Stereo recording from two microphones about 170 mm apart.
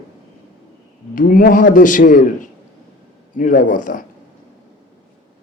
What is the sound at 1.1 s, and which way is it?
A man's voice, 55° left (ahead or behind).